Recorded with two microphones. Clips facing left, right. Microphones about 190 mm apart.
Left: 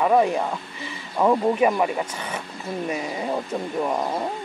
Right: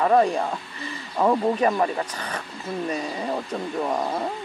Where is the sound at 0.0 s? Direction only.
10° left (ahead or behind).